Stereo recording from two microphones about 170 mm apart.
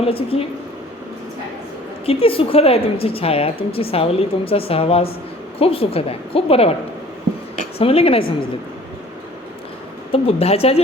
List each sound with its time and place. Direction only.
0.0 s a woman's voice: 35° left (ahead or behind)
2.0 s a woman's voice: 35° left (ahead or behind)
7.8 s a woman's voice: 35° left (ahead or behind)
10.1 s a woman's voice: 35° left (ahead or behind)